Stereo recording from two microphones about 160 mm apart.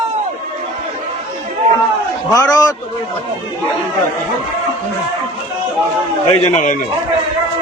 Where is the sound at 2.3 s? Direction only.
25° left (ahead or behind).